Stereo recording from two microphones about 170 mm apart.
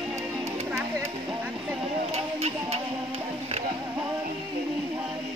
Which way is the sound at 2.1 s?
35° right (ahead or behind).